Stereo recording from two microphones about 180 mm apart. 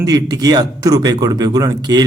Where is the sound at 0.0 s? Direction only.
20° right (ahead or behind).